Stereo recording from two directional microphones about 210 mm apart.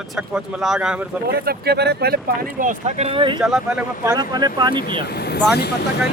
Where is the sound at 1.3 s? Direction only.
50° right (ahead or behind); by 3.4 s 25° right (ahead or behind).